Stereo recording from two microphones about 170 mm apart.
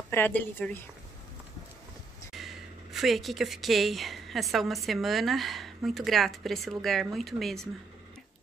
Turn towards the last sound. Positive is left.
turn(degrees=0)  # may be behind; listen again after turning